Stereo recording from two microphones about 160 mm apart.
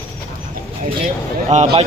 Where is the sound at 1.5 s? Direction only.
40° right (ahead or behind).